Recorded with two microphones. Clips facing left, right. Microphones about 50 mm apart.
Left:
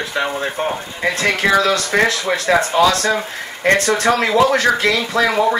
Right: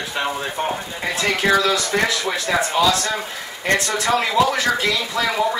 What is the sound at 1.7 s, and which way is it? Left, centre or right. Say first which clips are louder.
Speech: left 4 dB; left.